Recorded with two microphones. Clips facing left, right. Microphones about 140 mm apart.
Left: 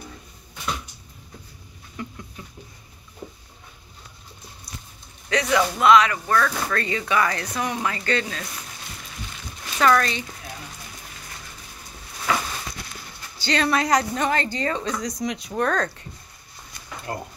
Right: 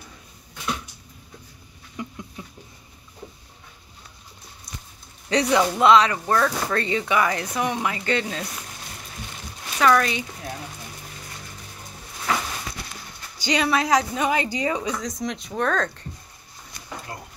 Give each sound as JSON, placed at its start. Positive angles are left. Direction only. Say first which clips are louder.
{"t": 2.0, "sound": "a sound", "louder": "right 1 dB", "side_deg": -15}
{"t": 2.4, "sound": "patter", "louder": "right 2 dB", "side_deg": -15}
{"t": 5.3, "sound": "speech", "louder": "right 2 dB", "side_deg": -30}
{"t": 5.6, "sound": "speech", "louder": "even", "side_deg": -20}
{"t": 9.8, "sound": "a woman's voice", "louder": "even", "side_deg": -5}
{"t": 13.4, "sound": "speech", "louder": "even", "side_deg": -15}
{"t": 13.7, "sound": "a woman's voice", "louder": "even", "side_deg": 0}
{"t": 15.0, "sound": "speech", "louder": "left 1 dB", "side_deg": 0}
{"t": 17.1, "sound": "a sound", "louder": "left 9 dB", "side_deg": 55}